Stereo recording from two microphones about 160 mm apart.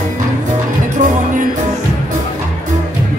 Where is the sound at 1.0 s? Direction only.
55° right (ahead or behind).